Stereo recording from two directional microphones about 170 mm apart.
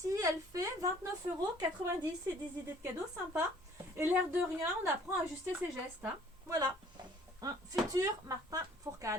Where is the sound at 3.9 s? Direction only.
10° right (ahead or behind).